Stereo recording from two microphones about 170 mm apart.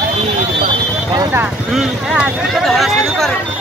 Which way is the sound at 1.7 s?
Centre (ahead or behind).